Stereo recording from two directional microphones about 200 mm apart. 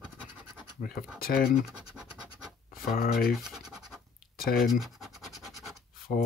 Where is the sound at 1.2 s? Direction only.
45° left (ahead or behind).